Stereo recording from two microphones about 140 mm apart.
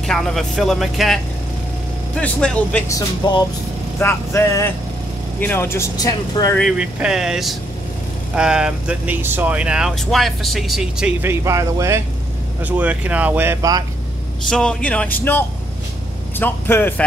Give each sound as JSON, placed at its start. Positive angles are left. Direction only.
{"t": 0.0, "sound": "speech", "side_deg": 0}
{"t": 2.9, "sound": "speech", "side_deg": 30}
{"t": 4.0, "sound": "speech", "side_deg": 20}
{"t": 6.8, "sound": "speech", "side_deg": -5}
{"t": 11.2, "sound": "speech", "side_deg": -20}
{"t": 14.5, "sound": "speech", "side_deg": 5}
{"t": 16.3, "sound": "speech", "side_deg": 15}